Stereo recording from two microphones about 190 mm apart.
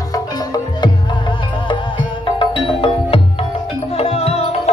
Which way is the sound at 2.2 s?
25° left (ahead or behind).